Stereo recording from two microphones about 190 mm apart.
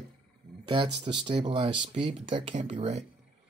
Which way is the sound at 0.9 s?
65° right (ahead or behind).